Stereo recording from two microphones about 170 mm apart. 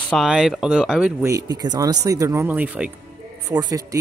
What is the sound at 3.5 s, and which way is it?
Speech, 20° right (ahead or behind).